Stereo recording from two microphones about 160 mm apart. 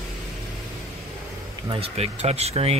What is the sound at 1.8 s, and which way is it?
Speech, 40° right (ahead or behind).